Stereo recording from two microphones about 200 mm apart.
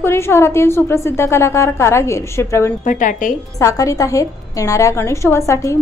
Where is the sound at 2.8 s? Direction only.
40° left (ahead or behind).